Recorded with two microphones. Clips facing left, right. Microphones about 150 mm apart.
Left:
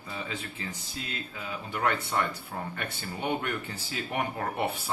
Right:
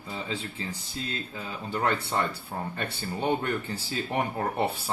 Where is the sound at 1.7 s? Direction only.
35° right (ahead or behind).